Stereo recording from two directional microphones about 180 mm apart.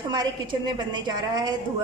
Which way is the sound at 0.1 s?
25° right (ahead or behind).